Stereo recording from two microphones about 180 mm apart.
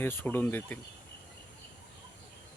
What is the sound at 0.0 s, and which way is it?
Speech, 10° left (ahead or behind).